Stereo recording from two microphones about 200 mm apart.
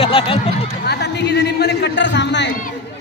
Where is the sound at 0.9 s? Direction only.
55° left (ahead or behind).